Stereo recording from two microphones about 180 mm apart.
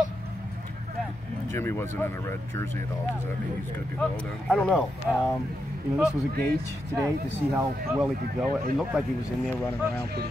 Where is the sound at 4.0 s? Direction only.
5° left (ahead or behind).